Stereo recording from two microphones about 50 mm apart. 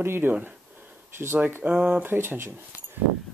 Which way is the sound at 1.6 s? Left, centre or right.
Right.